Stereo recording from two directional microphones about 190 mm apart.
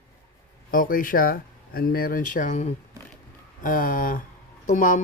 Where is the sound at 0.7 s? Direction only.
45° left (ahead or behind).